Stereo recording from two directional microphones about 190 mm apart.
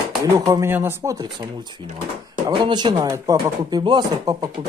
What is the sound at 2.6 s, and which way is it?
Speech, 20° right (ahead or behind).